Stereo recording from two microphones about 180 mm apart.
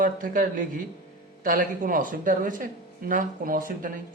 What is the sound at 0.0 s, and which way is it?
Speech, 45° right (ahead or behind).